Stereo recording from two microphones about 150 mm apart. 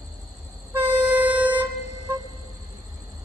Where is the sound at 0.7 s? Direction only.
10° right (ahead or behind).